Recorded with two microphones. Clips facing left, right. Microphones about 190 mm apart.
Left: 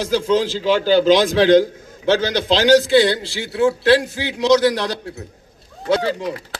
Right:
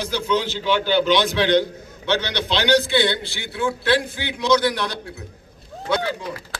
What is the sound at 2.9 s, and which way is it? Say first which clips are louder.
A man's voice: left 6 dB; 40° left (ahead or behind).